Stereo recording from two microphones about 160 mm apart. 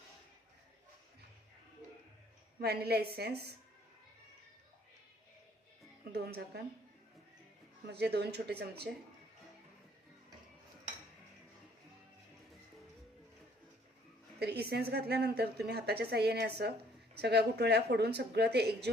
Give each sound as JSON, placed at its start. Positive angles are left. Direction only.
{"t": 2.6, "sound": "a woman's voice", "side_deg": -80}
{"t": 6.1, "sound": "a woman's voice", "side_deg": -80}
{"t": 7.9, "sound": "a woman's voice", "side_deg": -90}
{"t": 14.3, "sound": "a woman's voice", "side_deg": -90}